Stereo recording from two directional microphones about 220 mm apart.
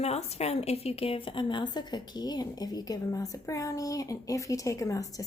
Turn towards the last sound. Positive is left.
turn(degrees=15)  # may be behind; listen again after turning